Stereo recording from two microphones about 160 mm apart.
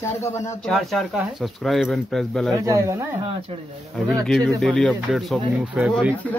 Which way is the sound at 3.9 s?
5° left (ahead or behind).